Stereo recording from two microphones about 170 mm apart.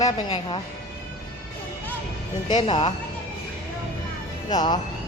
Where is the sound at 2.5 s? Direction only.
30° left (ahead or behind).